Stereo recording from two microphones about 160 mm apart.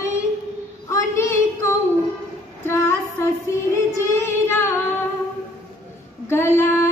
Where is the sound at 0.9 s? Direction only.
15° left (ahead or behind).